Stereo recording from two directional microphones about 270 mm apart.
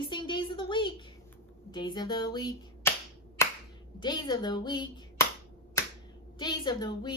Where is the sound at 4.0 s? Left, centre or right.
Centre.